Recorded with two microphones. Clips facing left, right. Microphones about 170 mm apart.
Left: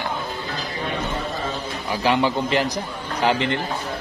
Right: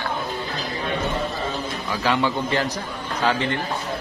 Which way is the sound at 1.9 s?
15° left (ahead or behind).